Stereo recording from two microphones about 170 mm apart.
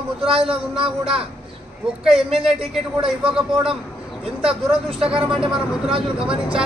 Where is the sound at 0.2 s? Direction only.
35° right (ahead or behind).